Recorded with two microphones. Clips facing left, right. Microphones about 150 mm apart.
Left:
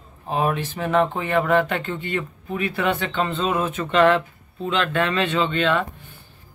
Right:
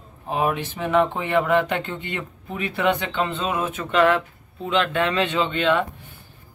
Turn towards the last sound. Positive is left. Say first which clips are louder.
# even
turn(degrees=-15)  # may be behind; listen again after turning